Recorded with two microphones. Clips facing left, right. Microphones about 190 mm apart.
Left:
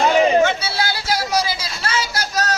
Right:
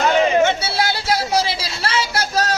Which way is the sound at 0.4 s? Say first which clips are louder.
Right 1 dB; 25° right (ahead or behind).